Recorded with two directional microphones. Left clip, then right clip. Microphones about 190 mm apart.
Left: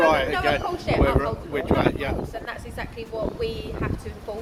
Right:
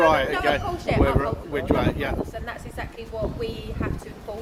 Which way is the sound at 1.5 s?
15° right (ahead or behind).